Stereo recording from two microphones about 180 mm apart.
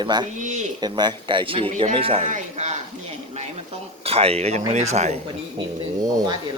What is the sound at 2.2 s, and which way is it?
Speech, 40° right (ahead or behind).